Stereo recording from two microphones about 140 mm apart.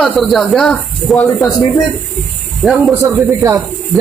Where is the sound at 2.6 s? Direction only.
Centre (ahead or behind).